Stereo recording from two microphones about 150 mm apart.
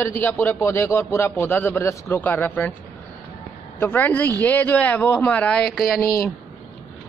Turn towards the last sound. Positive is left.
turn(degrees=0)  # may be behind; listen again after turning